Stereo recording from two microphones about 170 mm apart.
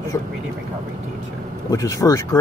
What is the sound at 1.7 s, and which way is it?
Speech, 20° left (ahead or behind).